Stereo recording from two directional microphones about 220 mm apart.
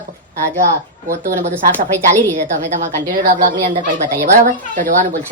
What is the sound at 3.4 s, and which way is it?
Speech, 25° right (ahead or behind).